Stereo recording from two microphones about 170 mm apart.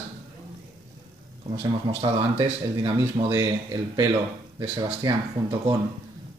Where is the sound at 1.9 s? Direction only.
30° right (ahead or behind).